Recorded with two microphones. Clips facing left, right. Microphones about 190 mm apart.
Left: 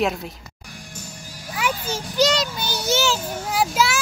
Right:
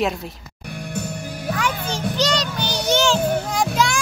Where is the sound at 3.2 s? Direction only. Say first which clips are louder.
Right 9 dB; 60° right (ahead or behind).